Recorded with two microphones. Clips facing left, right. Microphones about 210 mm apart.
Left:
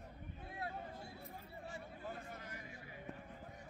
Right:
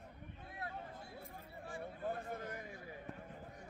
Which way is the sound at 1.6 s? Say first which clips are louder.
Right 7 dB; 55° right (ahead or behind).